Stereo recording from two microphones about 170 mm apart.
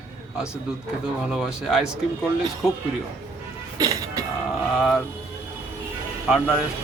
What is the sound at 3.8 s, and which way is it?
Music, 20° right (ahead or behind).